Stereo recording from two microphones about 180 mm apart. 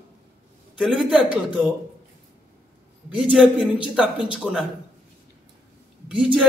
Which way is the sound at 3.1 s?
5° right (ahead or behind).